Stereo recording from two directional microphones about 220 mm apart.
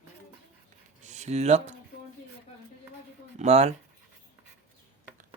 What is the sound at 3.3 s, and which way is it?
Speech, 30° right (ahead or behind).